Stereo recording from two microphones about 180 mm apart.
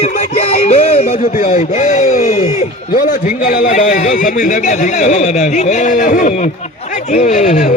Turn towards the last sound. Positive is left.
turn(degrees=40)  # may be behind; listen again after turning